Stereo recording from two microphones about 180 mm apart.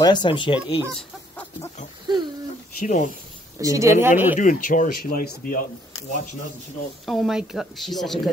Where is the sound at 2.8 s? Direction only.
50° left (ahead or behind).